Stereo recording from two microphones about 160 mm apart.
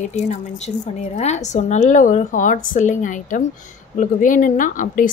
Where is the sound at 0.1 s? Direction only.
45° left (ahead or behind).